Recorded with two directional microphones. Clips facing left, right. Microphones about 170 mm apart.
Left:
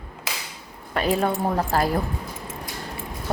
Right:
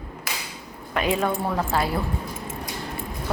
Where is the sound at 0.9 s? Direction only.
35° left (ahead or behind).